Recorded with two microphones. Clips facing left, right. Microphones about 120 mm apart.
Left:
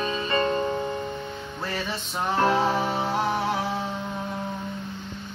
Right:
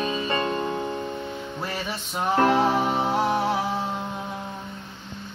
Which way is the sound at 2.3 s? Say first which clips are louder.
Right 2 dB; 20° right (ahead or behind).